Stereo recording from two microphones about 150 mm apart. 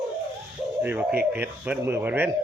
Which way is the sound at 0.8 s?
10° right (ahead or behind).